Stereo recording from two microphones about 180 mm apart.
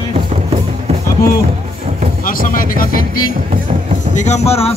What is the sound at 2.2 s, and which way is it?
Music, 50° left (ahead or behind).